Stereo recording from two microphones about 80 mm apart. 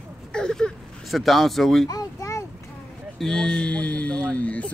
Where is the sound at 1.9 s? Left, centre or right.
Left.